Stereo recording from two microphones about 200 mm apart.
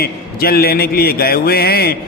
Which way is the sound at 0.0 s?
50° left (ahead or behind).